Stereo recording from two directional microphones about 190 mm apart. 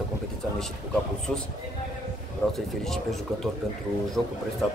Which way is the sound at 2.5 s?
Centre (ahead or behind).